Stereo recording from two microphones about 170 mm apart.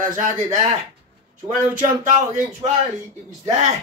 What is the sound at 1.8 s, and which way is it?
Speech, 50° right (ahead or behind).